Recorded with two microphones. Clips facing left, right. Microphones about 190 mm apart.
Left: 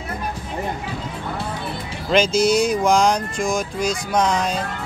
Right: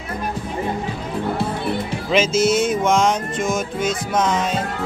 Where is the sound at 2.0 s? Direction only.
5° right (ahead or behind).